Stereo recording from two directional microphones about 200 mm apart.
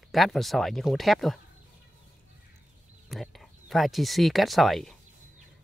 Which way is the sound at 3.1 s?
Centre (ahead or behind).